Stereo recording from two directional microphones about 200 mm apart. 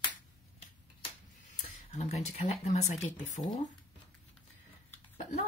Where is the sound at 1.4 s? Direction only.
35° left (ahead or behind).